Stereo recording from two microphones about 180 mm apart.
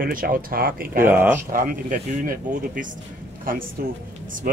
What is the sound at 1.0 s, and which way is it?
Speech, 10° right (ahead or behind).